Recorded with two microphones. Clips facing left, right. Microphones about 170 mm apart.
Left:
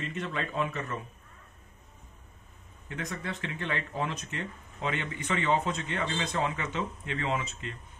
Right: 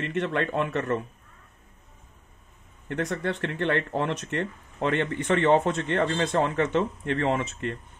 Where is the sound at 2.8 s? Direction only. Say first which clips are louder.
Right 8 dB; 65° right (ahead or behind).